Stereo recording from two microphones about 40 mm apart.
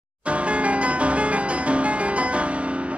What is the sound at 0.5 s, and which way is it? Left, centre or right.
Music, right.